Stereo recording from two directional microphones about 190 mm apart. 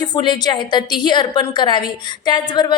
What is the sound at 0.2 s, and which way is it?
Speech, 25° left (ahead or behind).